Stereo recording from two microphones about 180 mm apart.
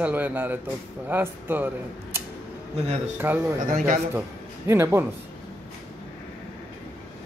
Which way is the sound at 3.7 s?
50° right (ahead or behind).